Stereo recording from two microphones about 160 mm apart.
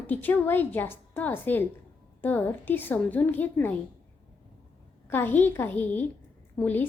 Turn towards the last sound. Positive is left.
turn(degrees=10)  # may be behind; listen again after turning